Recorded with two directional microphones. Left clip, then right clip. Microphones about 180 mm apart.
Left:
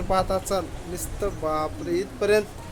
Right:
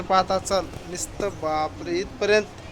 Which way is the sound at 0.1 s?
10° left (ahead or behind).